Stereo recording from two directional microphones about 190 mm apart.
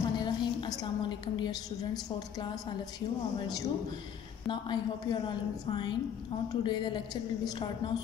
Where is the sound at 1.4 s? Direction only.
20° left (ahead or behind).